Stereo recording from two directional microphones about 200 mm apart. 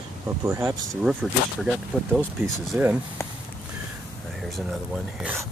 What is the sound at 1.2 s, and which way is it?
Speech, centre (ahead or behind).